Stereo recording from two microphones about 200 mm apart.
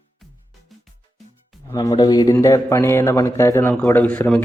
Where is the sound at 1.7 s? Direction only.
20° left (ahead or behind).